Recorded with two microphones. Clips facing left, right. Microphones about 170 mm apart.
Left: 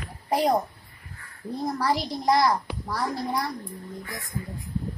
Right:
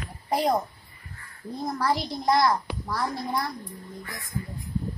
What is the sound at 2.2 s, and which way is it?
A child's voice, 10° left (ahead or behind).